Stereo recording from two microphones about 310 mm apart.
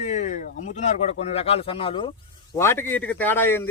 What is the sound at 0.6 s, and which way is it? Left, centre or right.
Speech, left.